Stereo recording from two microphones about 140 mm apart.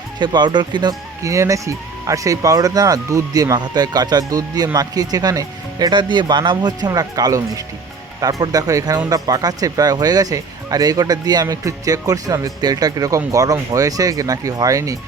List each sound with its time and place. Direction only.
0.2 s speech: 30° right (ahead or behind)